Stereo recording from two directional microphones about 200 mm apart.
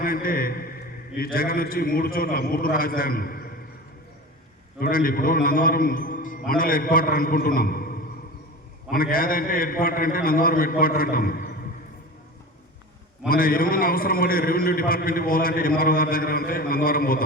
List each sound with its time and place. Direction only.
0.0 s a man's voice: 45° left (ahead or behind)
4.8 s a man's voice: 45° left (ahead or behind)
13.2 s a man's voice: 45° left (ahead or behind)